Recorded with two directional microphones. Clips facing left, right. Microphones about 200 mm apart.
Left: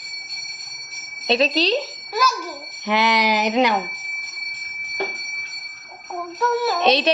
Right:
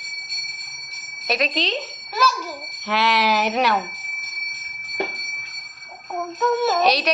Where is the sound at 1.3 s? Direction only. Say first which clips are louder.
Left 5 dB; 30° left (ahead or behind).